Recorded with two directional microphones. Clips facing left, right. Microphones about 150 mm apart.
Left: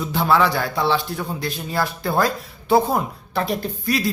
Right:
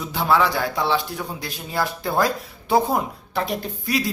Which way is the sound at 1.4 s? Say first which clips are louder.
Left 1 dB; 15° right (ahead or behind).